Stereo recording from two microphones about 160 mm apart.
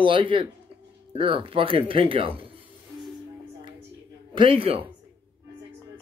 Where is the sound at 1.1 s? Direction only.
35° right (ahead or behind).